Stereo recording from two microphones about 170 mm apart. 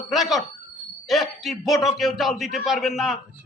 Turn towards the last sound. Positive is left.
turn(degrees=0)  # may be behind; listen again after turning